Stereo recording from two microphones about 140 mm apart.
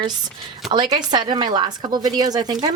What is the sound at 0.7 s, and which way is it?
Speech, 30° right (ahead or behind).